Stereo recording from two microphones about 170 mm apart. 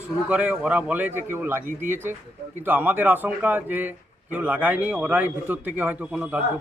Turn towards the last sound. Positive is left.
turn(degrees=-10)  # may be behind; listen again after turning